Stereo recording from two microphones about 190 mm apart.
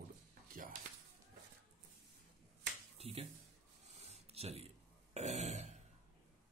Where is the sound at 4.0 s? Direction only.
35° right (ahead or behind).